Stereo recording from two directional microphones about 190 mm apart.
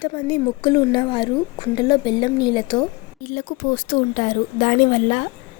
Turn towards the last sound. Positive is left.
turn(degrees=45)  # may be behind; listen again after turning